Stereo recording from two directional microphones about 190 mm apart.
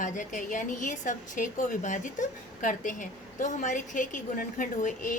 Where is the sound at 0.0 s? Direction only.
40° left (ahead or behind).